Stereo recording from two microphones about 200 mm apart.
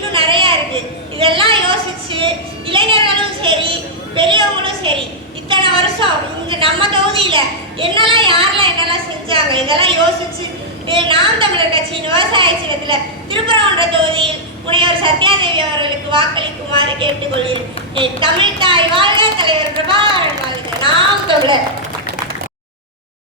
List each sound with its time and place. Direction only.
0.1 s a sound: 25° right (ahead or behind)
1.2 s a woman's voice: 25° right (ahead or behind)
2.0 s a sound: 25° right (ahead or behind)
4.1 s a woman's voice: 25° right (ahead or behind)
5.5 s vehicle: 25° right (ahead or behind)
6.5 s a woman's voice: 25° right (ahead or behind)